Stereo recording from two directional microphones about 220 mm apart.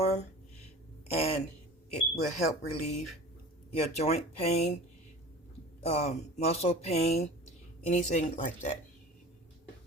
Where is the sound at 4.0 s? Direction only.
30° left (ahead or behind).